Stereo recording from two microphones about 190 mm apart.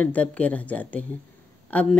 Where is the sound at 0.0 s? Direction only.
5° left (ahead or behind).